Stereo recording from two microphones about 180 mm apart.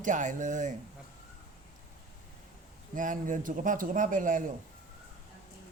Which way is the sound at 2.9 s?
45° right (ahead or behind).